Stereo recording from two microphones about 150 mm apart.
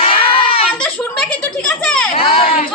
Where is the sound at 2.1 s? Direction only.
40° left (ahead or behind).